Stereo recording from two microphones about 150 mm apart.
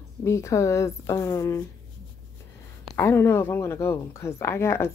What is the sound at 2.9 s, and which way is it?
Speech, 15° left (ahead or behind).